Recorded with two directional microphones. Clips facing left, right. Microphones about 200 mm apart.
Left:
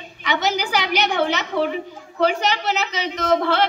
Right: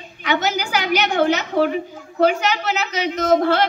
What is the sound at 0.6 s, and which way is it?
A woman's voice, 45° right (ahead or behind).